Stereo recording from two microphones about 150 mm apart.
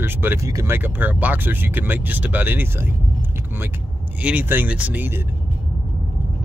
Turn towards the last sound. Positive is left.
turn(degrees=-10)  # may be behind; listen again after turning